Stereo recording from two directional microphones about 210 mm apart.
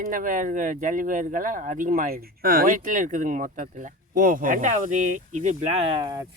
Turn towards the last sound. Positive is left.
turn(degrees=-15)  # may be behind; listen again after turning